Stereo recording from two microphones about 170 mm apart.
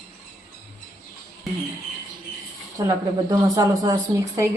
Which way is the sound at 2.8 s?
20° right (ahead or behind).